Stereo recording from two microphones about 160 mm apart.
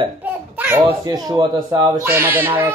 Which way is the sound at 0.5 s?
10° right (ahead or behind).